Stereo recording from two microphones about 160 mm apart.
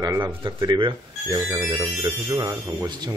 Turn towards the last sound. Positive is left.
turn(degrees=-20)  # may be behind; listen again after turning